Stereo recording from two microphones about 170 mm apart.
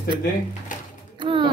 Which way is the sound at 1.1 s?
30° right (ahead or behind).